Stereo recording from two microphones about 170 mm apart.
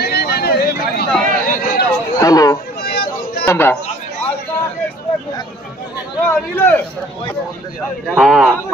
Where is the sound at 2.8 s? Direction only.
65° left (ahead or behind).